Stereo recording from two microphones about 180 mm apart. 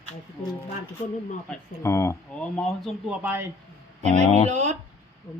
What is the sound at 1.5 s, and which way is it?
Speech, 15° left (ahead or behind).